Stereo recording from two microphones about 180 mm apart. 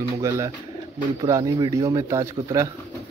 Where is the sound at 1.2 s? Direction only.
20° right (ahead or behind).